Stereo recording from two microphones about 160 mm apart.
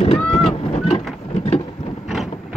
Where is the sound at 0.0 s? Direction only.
40° left (ahead or behind).